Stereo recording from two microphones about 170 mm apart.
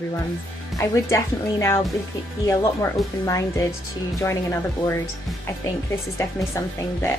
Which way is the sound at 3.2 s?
20° left (ahead or behind).